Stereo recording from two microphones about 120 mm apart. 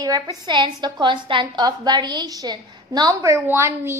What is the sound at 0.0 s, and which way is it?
A woman's voice, 35° right (ahead or behind).